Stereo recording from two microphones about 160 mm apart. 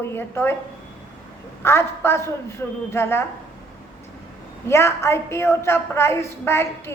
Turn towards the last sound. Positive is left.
turn(degrees=15)  # may be behind; listen again after turning